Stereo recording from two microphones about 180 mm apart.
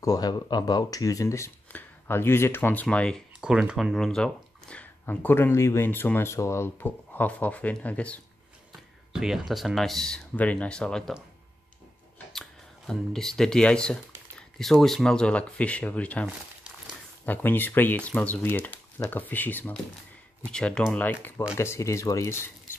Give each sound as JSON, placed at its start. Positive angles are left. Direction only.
{"t": 0.0, "sound": "speech", "side_deg": 20}
{"t": 9.1, "sound": "speech", "side_deg": 0}
{"t": 12.3, "sound": "speech", "side_deg": 0}
{"t": 17.3, "sound": "speech", "side_deg": 10}
{"t": 22.7, "sound": "cutlery", "side_deg": 10}